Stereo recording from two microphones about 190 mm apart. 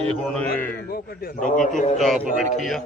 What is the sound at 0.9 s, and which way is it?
Speech, 55° left (ahead or behind).